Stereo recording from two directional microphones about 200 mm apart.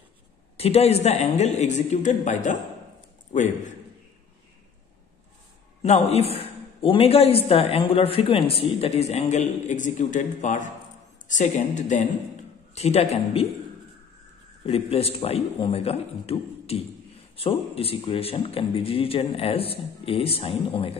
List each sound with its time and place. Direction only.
0.6 s speech: 30° left (ahead or behind)
5.8 s a man's voice: 30° left (ahead or behind)
14.7 s speech: 30° left (ahead or behind)